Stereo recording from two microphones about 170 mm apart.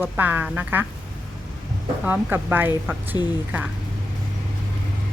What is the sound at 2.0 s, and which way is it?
Speech, 10° right (ahead or behind).